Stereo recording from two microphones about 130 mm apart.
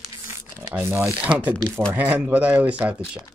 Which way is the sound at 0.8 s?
20° right (ahead or behind).